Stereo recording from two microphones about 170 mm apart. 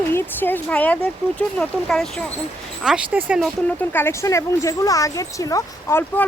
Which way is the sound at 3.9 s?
15° left (ahead or behind).